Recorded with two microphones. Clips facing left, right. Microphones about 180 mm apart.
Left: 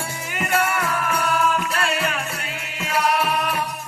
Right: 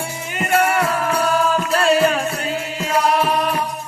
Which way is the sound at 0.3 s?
30° right (ahead or behind).